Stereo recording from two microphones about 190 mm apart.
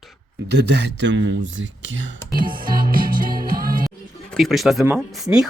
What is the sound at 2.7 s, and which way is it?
Music, 50° right (ahead or behind).